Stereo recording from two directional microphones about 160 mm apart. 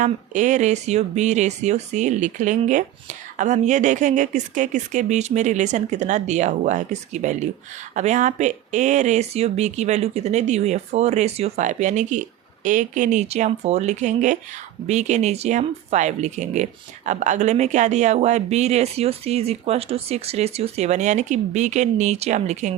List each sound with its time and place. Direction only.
0.0 s speech: 50° right (ahead or behind)